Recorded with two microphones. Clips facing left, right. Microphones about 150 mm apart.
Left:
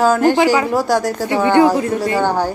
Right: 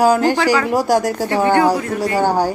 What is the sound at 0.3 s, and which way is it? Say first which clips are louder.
A woman's voice: left 2 dB; 15° left (ahead or behind).